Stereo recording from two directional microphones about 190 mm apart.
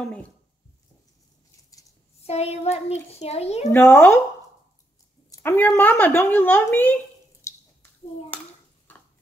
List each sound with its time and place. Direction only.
0.0 s a woman's voice: 5° left (ahead or behind)
2.2 s a child's voice: 35° left (ahead or behind)
3.7 s a woman's voice: 10° left (ahead or behind)
5.3 s a woman's voice: 15° left (ahead or behind)
7.4 s a sound: 15° left (ahead or behind)
8.3 s a child's voice: 10° left (ahead or behind)